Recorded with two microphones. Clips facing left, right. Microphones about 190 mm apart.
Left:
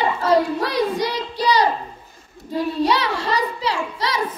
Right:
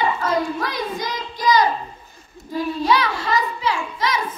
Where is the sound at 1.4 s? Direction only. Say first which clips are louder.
Right 1 dB; 35° left (ahead or behind).